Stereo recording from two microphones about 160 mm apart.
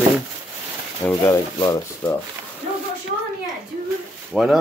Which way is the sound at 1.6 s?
20° left (ahead or behind).